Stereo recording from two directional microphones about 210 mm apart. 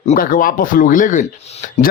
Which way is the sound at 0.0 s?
40° left (ahead or behind).